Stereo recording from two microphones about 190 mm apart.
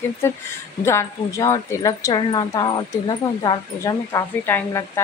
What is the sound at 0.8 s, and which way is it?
A woman's voice, 15° left (ahead or behind).